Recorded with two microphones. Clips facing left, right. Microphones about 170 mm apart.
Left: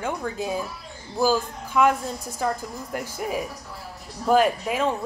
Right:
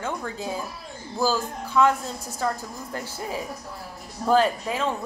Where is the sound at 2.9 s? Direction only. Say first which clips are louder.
Left 4 dB; 15° left (ahead or behind).